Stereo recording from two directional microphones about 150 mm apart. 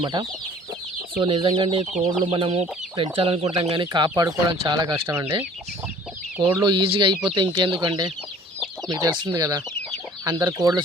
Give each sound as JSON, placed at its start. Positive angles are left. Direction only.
{"t": 0.0, "sound": "speech", "side_deg": -30}
{"t": 1.2, "sound": "chicken", "side_deg": -30}
{"t": 4.1, "sound": "speech", "side_deg": -25}
{"t": 5.0, "sound": "speech", "side_deg": -15}
{"t": 6.6, "sound": "speech", "side_deg": -25}
{"t": 6.9, "sound": "chicken", "side_deg": -35}
{"t": 7.7, "sound": "speech", "side_deg": -30}
{"t": 9.4, "sound": "speech", "side_deg": -20}